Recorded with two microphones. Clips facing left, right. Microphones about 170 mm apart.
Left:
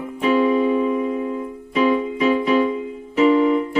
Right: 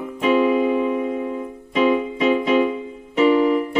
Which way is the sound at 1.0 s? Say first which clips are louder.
Left 1 dB; 40° right (ahead or behind).